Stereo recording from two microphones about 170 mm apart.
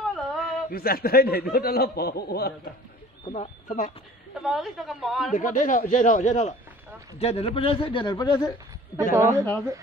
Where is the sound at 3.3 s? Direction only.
45° left (ahead or behind).